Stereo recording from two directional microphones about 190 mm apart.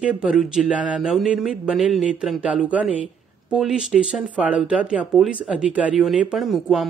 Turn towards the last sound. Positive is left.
turn(degrees=0)  # may be behind; listen again after turning